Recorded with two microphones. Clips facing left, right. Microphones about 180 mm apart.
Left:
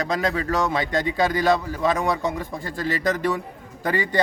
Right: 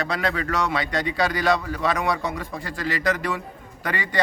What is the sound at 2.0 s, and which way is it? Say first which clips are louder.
Speech: left 2 dB; 20° left (ahead or behind).